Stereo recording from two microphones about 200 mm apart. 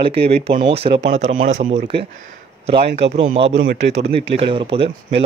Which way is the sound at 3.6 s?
45° right (ahead or behind).